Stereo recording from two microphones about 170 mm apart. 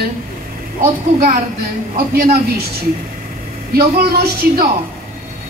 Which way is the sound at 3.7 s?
65° right (ahead or behind).